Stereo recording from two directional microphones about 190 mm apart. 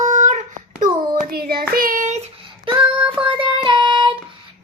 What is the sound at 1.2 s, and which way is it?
Child singing, 55° right (ahead or behind).